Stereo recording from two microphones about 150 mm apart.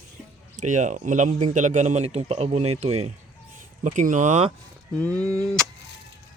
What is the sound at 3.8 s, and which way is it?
Speech, 55° right (ahead or behind).